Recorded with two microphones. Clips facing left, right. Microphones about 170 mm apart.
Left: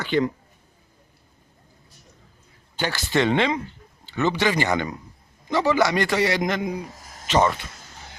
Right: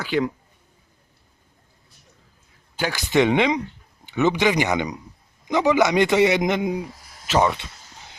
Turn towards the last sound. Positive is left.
turn(degrees=-5)  # may be behind; listen again after turning